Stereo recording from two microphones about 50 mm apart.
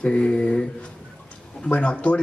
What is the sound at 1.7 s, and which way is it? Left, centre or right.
Speech, left.